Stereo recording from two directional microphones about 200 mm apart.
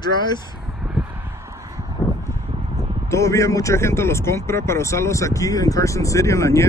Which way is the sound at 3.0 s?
15° left (ahead or behind).